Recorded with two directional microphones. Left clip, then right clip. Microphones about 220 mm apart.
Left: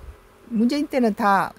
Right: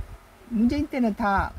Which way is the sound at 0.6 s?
30° left (ahead or behind).